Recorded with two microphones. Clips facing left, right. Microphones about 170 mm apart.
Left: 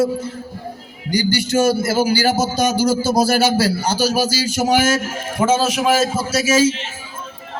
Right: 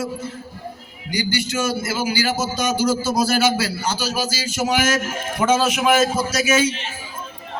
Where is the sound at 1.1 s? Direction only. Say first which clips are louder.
Left 5 dB; 35° left (ahead or behind).